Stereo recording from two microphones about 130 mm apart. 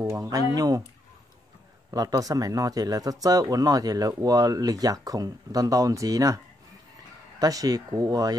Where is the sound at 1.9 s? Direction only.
30° right (ahead or behind).